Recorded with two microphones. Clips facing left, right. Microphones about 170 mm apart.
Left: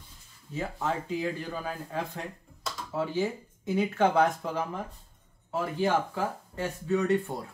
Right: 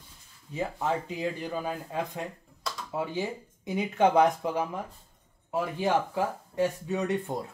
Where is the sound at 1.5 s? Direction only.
20° right (ahead or behind).